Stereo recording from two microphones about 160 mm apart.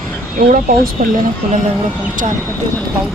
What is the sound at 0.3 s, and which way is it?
Speech, 60° right (ahead or behind).